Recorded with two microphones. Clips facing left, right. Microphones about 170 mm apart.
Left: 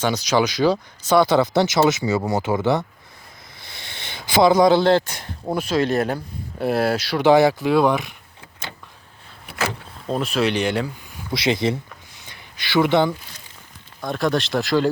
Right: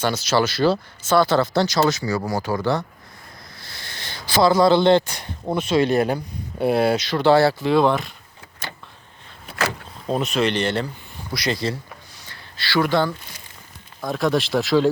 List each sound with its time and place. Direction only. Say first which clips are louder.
0.1 s speech: left 1 dB; 15° left (ahead or behind)
4.4 s speech: left 1 dB; 15° left (ahead or behind)
4.8 s speech: right 1 dB; 5° left (ahead or behind)
7.2 s speech: left 2 dB; 15° left (ahead or behind)
10.1 s speech: even; centre (ahead or behind)
11.3 s speech: left 4 dB; 25° left (ahead or behind)
14.0 s speech: right 1 dB; centre (ahead or behind)